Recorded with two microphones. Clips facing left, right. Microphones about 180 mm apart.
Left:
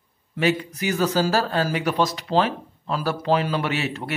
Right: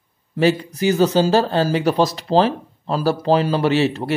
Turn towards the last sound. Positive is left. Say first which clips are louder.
# right 9 dB
turn(degrees=-30)  # may be behind; listen again after turning